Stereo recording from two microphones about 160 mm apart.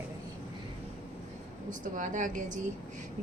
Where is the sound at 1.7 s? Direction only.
55° right (ahead or behind).